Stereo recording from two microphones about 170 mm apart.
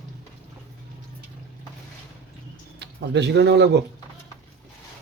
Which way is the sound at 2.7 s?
90° right.